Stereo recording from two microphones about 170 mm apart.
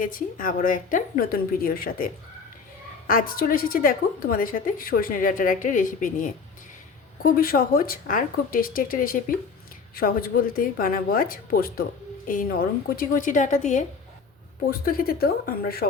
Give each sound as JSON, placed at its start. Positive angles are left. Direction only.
{"t": 0.0, "sound": "a woman's voice", "side_deg": 55}
{"t": 3.1, "sound": "a woman's voice", "side_deg": 55}
{"t": 14.7, "sound": "a woman's voice", "side_deg": 60}